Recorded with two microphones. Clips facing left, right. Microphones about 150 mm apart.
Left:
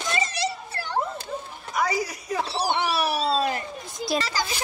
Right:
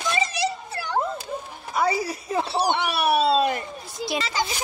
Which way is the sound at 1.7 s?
30° right (ahead or behind).